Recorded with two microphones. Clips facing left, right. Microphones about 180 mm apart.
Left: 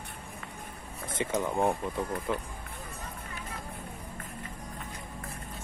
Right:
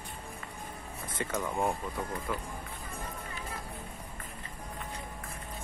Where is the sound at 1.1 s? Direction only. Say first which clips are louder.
Left 4 dB; 15° left (ahead or behind).